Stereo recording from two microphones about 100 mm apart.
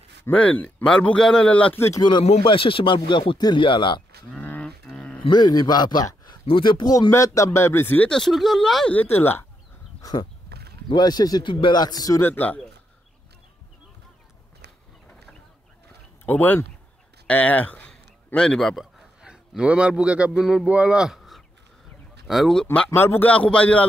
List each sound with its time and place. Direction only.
0.3 s speech: 15° left (ahead or behind)
2.4 s speech: 60° left (ahead or behind)
4.4 s livestock: 20° left (ahead or behind)
5.3 s a man's voice: 45° left (ahead or behind)
6.4 s a man's voice: 55° left (ahead or behind)
7.1 s speech: 30° left (ahead or behind)
8.1 s speech: centre (ahead or behind)
8.9 s speech: 20° left (ahead or behind)
10.9 s a man's voice: 45° left (ahead or behind)
12.2 s speech: 20° left (ahead or behind)
16.3 s speech: 20° left (ahead or behind); by 22.7 s centre (ahead or behind)
22.8 s speech: 25° left (ahead or behind)